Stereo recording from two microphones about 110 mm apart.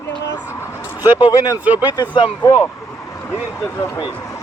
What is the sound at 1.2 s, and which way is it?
Speech, 35° left (ahead or behind).